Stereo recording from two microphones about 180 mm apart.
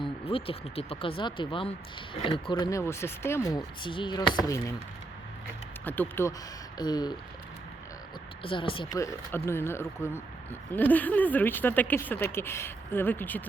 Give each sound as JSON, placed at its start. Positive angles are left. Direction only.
{"t": 0.3, "sound": "speech", "side_deg": 30}
{"t": 5.8, "sound": "speech", "side_deg": 10}
{"t": 6.7, "sound": "speech", "side_deg": 25}
{"t": 8.4, "sound": "speech", "side_deg": 30}